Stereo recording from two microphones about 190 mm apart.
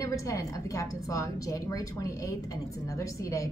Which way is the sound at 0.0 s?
15° left (ahead or behind).